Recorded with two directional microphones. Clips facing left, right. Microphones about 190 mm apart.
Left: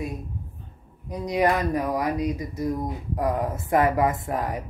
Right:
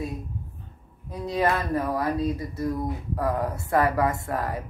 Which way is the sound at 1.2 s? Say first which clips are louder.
Left 2 dB; 15° left (ahead or behind).